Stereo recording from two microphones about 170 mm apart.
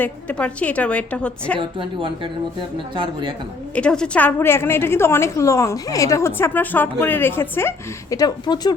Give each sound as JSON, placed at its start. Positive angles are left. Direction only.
{"t": 0.0, "sound": "a woman's voice", "side_deg": 5}
{"t": 1.5, "sound": "a woman's voice", "side_deg": -30}
{"t": 3.8, "sound": "a woman's voice", "side_deg": 5}